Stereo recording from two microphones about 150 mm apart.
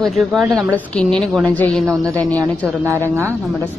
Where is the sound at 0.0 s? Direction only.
Centre (ahead or behind).